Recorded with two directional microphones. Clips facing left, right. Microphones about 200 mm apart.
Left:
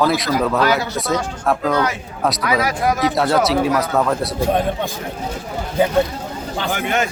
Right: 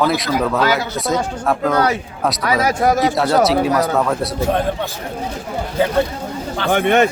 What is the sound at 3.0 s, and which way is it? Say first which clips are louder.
Speech: right 2 dB; centre (ahead or behind).